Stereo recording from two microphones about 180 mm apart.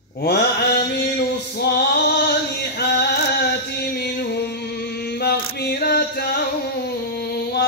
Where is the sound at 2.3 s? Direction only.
65° left (ahead or behind).